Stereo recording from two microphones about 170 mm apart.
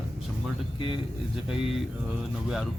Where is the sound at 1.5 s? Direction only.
Centre (ahead or behind).